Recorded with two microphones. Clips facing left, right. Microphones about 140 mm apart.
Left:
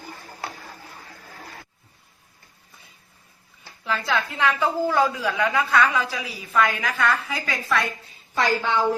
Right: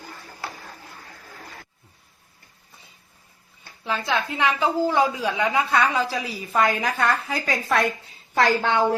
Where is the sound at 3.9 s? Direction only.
20° right (ahead or behind); by 7.8 s 45° right (ahead or behind).